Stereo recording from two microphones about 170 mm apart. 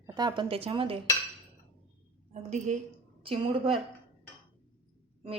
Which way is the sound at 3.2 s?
30° right (ahead or behind).